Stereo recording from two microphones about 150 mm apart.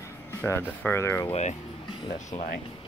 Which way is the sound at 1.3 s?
50° left (ahead or behind).